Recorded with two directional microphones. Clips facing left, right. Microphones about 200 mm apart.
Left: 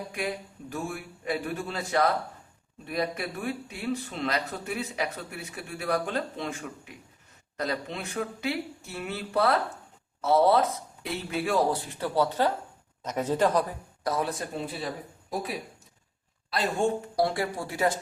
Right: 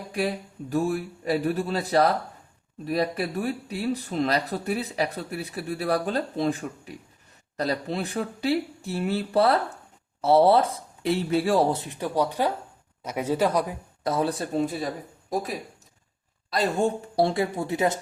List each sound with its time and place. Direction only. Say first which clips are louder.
0.1 s speech: right 10 dB; 35° right (ahead or behind); by 13.7 s 10° right (ahead or behind)
14.0 s speech: right 4 dB; 30° right (ahead or behind)
16.5 s speech: right 3 dB; 40° right (ahead or behind)
17.2 s speech: right 7 dB; 25° right (ahead or behind)